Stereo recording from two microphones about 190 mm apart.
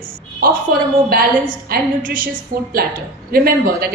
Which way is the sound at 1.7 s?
50° right (ahead or behind).